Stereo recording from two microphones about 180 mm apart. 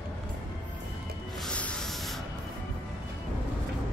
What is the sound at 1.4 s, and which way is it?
Spray, 5° left (ahead or behind).